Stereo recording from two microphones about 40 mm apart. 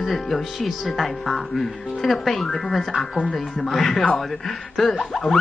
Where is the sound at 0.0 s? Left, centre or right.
Centre.